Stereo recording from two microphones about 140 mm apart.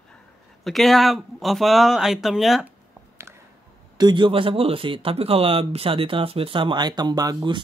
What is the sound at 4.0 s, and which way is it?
A man's voice, 35° right (ahead or behind).